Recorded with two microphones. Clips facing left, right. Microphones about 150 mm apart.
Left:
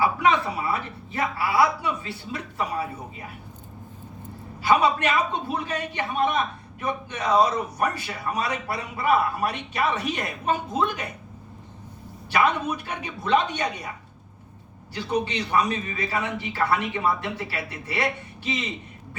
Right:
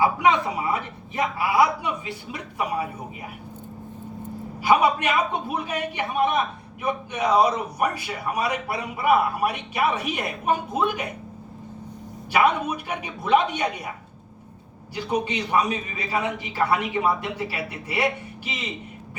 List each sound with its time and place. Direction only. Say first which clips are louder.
0.0 s a man's voice: right 2 dB; 20° right (ahead or behind)
4.6 s a man's voice: right 1 dB; 10° right (ahead or behind)
12.3 s a man's voice: right 2 dB; 10° right (ahead or behind)
14.9 s a man's voice: right 1 dB; 15° right (ahead or behind)